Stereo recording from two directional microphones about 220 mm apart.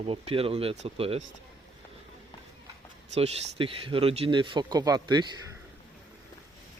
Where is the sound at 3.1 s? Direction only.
30° right (ahead or behind).